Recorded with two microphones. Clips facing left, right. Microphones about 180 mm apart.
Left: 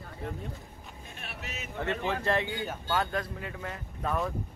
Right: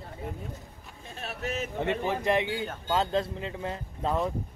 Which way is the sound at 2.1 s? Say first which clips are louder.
Right 2 dB; 15° right (ahead or behind).